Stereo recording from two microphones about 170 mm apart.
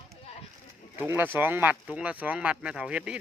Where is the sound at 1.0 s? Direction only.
10° right (ahead or behind).